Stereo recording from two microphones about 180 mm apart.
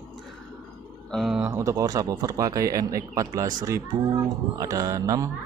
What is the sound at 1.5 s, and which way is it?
Speech, 15° right (ahead or behind).